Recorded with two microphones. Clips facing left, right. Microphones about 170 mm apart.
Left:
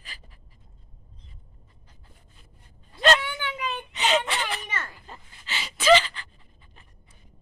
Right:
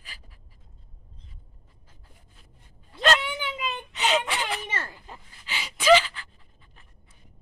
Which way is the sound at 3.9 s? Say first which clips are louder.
Left 1 dB; 5° right (ahead or behind).